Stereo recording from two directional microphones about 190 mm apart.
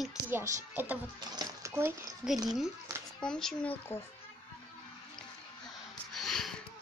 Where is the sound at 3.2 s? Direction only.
5° left (ahead or behind).